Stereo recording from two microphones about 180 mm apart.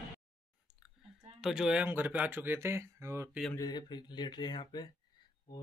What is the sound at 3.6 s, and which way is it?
Speech, 25° left (ahead or behind).